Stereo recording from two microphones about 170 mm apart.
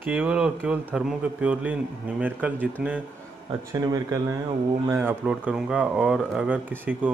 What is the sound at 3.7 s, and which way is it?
A man's voice, 20° right (ahead or behind).